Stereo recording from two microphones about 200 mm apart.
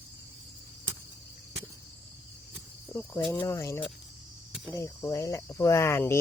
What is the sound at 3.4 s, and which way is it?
Speech, 15° left (ahead or behind).